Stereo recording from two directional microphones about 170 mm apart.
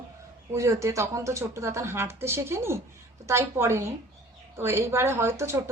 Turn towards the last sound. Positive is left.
turn(degrees=-15)  # may be behind; listen again after turning